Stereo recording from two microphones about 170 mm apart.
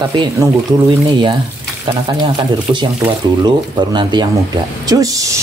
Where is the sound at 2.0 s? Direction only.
30° right (ahead or behind).